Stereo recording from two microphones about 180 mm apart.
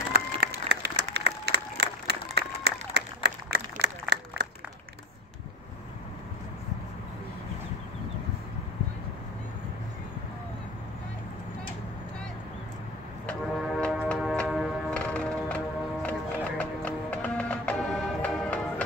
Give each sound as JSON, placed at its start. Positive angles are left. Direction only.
{"t": 0.1, "sound": "applause", "side_deg": -65}
{"t": 13.3, "sound": "music", "side_deg": 5}
{"t": 14.0, "sound": "tick-tock", "side_deg": 5}